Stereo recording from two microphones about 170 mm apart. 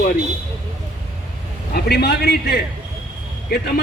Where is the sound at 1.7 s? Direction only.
65° left (ahead or behind).